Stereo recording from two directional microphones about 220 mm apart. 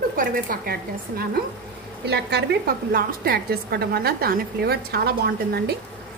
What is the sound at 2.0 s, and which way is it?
A woman's voice, 50° right (ahead or behind).